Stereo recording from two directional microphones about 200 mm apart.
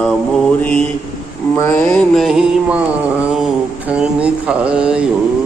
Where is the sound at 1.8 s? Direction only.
5° left (ahead or behind).